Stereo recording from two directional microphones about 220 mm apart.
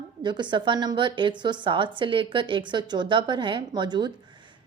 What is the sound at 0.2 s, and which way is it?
A woman's voice, 20° right (ahead or behind).